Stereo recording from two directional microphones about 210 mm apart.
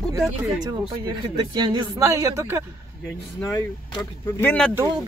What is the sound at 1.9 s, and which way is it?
Speech, 15° right (ahead or behind).